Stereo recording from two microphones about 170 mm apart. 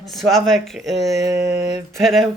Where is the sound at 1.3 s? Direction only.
80° right.